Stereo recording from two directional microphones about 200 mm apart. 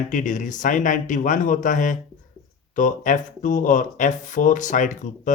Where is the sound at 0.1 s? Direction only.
40° left (ahead or behind).